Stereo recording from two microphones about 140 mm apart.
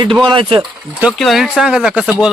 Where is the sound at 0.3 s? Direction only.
40° right (ahead or behind).